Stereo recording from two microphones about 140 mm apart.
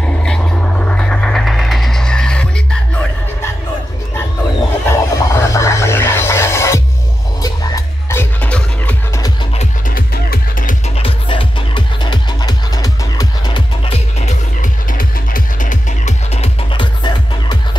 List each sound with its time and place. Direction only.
0.0 s a sound: 5° left (ahead or behind)
4.8 s music: 20° left (ahead or behind)
9.8 s music: 90° left
11.0 s music: 40° left (ahead or behind)
13.9 s music: 60° left (ahead or behind)
16.7 s music: 35° left (ahead or behind)